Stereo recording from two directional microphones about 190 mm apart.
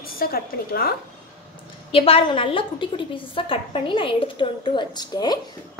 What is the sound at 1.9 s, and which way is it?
A woman's voice, 30° left (ahead or behind).